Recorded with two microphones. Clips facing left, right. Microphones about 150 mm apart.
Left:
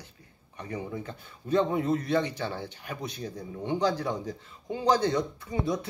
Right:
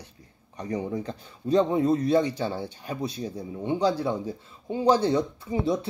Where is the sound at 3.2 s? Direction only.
10° right (ahead or behind).